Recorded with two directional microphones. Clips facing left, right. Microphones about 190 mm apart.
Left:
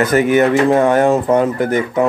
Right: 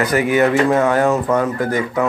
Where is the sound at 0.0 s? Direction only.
25° left (ahead or behind).